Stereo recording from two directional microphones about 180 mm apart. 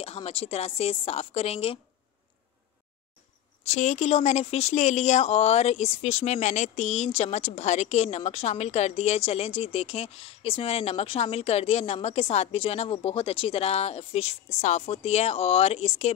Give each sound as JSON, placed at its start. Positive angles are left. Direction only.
{"t": 0.0, "sound": "speech", "side_deg": 30}
{"t": 3.6, "sound": "speech", "side_deg": 40}